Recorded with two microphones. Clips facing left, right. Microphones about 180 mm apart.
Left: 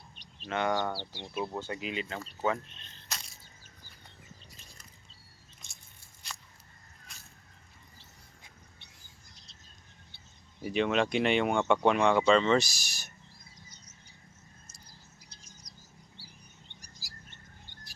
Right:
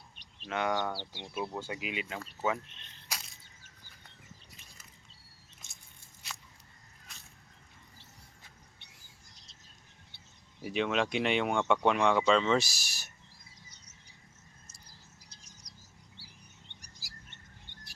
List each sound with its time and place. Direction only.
0.4 s speech: centre (ahead or behind)
0.9 s speech: 15° right (ahead or behind)
3.1 s a sound: 10° right (ahead or behind)
6.2 s a sound: 5° right (ahead or behind)
10.6 s speech: centre (ahead or behind)
15.6 s chirp: 70° right (ahead or behind)